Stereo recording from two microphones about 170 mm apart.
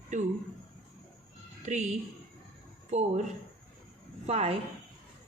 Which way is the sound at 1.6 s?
45° right (ahead or behind).